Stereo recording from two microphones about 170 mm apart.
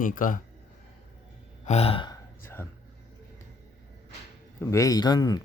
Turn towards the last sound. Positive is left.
turn(degrees=25)  # may be behind; listen again after turning